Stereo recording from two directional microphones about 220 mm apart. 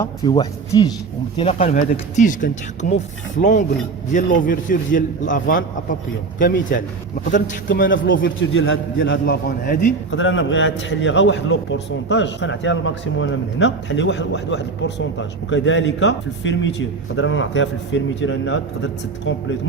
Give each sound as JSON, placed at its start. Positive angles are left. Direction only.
{"t": 0.3, "sound": "speech", "side_deg": 20}
{"t": 1.4, "sound": "a man's voice", "side_deg": 30}
{"t": 7.9, "sound": "a man's voice", "side_deg": 55}
{"t": 10.1, "sound": "a man's voice", "side_deg": 60}